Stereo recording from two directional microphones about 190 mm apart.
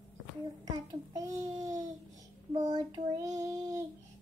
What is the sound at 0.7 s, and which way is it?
Child singing, 20° right (ahead or behind).